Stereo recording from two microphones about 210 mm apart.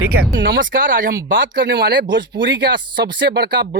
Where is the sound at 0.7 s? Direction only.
40° right (ahead or behind).